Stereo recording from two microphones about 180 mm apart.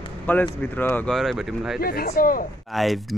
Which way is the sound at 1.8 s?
55° left (ahead or behind).